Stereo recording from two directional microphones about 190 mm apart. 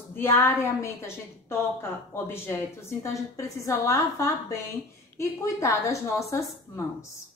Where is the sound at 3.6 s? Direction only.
15° left (ahead or behind).